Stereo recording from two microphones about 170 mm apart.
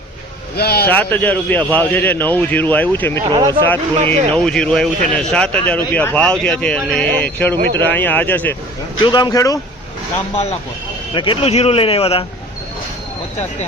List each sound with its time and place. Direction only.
0.5 s speech: 65° left (ahead or behind)
0.9 s a man's voice: 10° left (ahead or behind)
3.2 s speech: 30° right (ahead or behind)
3.7 s a man's voice: 10° left (ahead or behind)
9.0 s speech: 25° left (ahead or behind)
11.1 s speech: 30° left (ahead or behind)